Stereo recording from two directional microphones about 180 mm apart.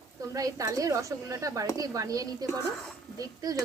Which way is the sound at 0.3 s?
20° right (ahead or behind).